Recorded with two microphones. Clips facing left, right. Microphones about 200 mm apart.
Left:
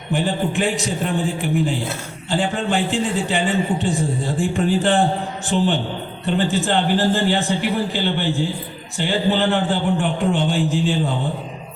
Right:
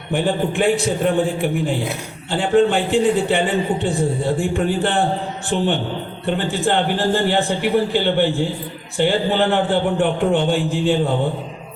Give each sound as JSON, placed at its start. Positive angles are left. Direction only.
{"t": 0.1, "sound": "a man's voice", "side_deg": -55}